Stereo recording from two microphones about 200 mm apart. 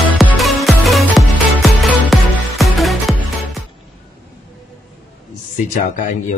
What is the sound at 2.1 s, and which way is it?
Music, centre (ahead or behind).